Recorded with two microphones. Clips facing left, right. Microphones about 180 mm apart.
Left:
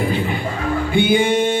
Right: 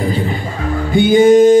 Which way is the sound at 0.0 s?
35° right (ahead or behind).